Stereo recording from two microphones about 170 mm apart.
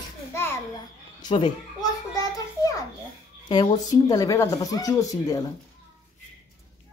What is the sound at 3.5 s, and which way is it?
Speech, 25° left (ahead or behind).